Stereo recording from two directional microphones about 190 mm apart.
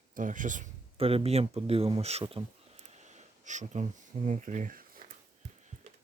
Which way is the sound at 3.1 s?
40° right (ahead or behind).